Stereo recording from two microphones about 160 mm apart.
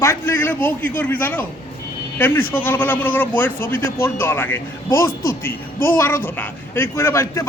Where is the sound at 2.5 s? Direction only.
15° left (ahead or behind).